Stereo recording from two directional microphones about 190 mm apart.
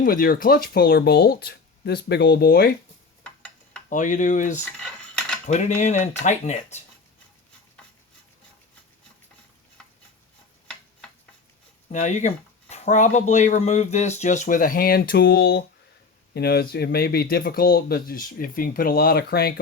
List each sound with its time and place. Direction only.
0.0 s speech: 50° left (ahead or behind)
3.2 s a sound: 10° left (ahead or behind)
3.8 s speech: 40° left (ahead or behind)
4.8 s dishes: 5° left (ahead or behind)
5.5 s speech: 40° left (ahead or behind)
11.9 s speech: 40° left (ahead or behind); by 19.5 s 55° left (ahead or behind)